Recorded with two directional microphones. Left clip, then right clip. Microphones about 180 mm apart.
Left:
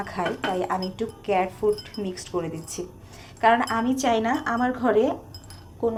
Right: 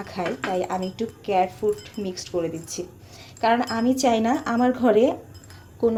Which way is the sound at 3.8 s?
40° right (ahead or behind).